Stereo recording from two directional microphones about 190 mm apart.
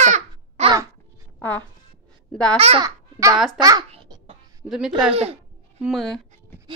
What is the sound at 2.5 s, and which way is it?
Speech, 30° right (ahead or behind).